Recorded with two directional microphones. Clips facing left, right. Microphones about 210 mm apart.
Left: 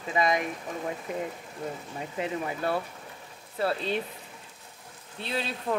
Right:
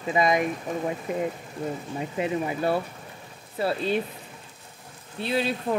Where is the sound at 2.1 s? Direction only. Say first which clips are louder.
Right 4 dB; 10° right (ahead or behind).